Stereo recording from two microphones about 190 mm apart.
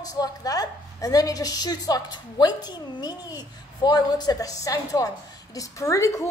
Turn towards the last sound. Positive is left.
turn(degrees=15)  # may be behind; listen again after turning